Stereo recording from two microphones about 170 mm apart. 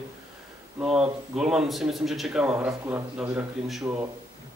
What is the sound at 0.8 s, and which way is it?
A man's voice, 5° right (ahead or behind).